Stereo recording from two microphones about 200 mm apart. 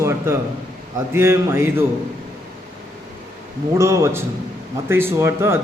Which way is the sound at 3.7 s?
15° right (ahead or behind).